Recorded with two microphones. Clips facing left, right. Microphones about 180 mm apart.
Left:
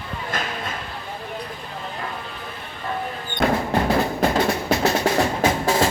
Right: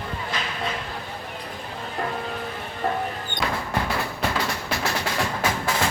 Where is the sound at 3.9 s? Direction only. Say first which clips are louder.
Left 7 dB; 40° left (ahead or behind).